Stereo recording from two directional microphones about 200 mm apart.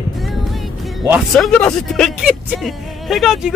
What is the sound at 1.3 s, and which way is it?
Speech, centre (ahead or behind).